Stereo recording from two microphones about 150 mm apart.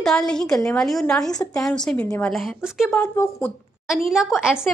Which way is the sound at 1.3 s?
25° left (ahead or behind).